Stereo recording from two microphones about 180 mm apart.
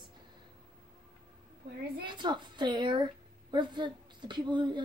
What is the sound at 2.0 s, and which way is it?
A woman's voice, 25° right (ahead or behind).